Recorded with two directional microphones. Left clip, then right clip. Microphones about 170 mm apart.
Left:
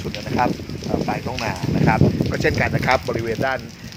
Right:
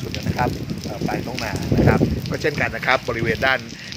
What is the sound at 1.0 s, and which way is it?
Speech, 20° left (ahead or behind).